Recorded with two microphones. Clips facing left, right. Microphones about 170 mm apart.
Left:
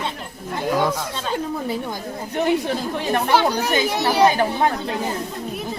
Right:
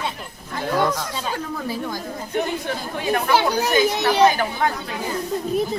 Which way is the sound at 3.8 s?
30° left (ahead or behind).